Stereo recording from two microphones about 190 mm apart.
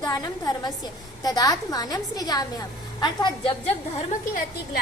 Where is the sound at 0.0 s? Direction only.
20° left (ahead or behind).